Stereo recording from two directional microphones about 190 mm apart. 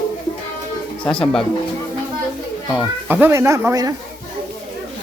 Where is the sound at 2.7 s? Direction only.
5° right (ahead or behind).